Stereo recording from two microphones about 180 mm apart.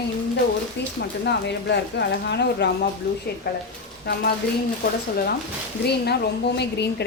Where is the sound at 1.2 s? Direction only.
70° left (ahead or behind).